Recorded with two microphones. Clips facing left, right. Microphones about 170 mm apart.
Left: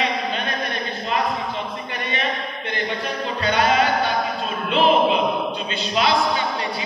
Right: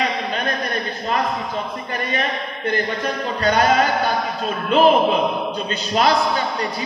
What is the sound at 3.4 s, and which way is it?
Speech, 40° right (ahead or behind).